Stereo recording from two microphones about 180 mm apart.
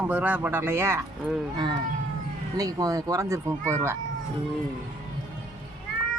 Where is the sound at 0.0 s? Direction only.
10° right (ahead or behind).